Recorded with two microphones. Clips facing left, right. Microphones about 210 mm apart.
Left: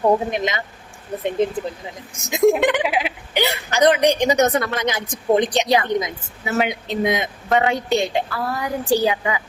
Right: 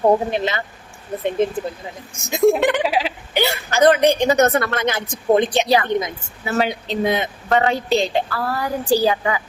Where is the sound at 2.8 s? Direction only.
30° right (ahead or behind).